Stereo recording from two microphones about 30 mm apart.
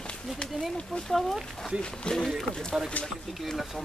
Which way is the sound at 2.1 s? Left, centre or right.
Left.